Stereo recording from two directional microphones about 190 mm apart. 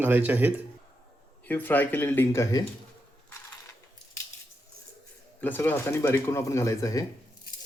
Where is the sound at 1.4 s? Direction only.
10° left (ahead or behind).